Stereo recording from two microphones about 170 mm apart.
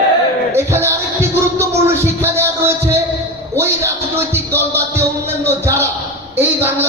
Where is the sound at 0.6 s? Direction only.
15° right (ahead or behind).